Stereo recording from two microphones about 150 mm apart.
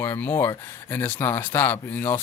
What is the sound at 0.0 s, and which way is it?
Speech, 15° left (ahead or behind).